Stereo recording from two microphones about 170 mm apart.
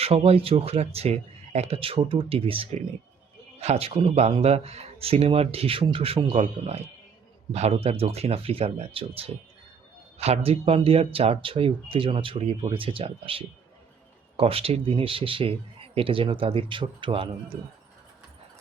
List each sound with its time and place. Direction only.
0.0 s speech: 35° right (ahead or behind)